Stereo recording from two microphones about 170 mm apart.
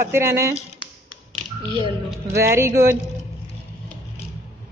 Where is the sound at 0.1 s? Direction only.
15° right (ahead or behind).